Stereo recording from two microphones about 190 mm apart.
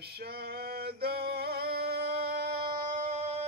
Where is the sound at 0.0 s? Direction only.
55° right (ahead or behind).